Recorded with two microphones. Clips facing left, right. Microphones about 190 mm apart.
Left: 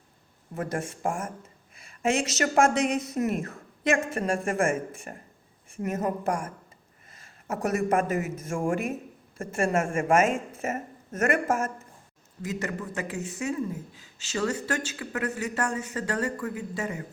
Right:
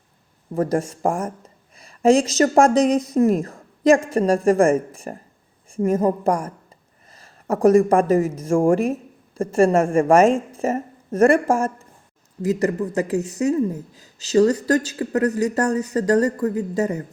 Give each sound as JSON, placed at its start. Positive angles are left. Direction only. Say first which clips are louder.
{"t": 0.5, "sound": "speech", "louder": "right 10 dB", "side_deg": -35}
{"t": 7.5, "sound": "speech", "louder": "right 11 dB", "side_deg": -30}